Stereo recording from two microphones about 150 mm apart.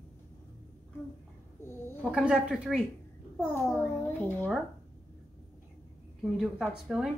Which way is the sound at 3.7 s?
15° left (ahead or behind).